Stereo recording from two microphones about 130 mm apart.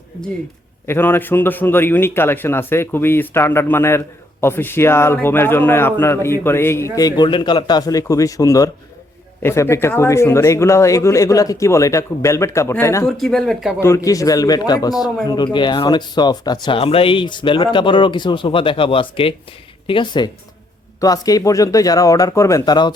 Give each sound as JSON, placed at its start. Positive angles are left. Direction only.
{"t": 0.9, "sound": "a man's voice", "side_deg": 15}
{"t": 13.1, "sound": "speech", "side_deg": 0}
{"t": 13.7, "sound": "a man's voice", "side_deg": 20}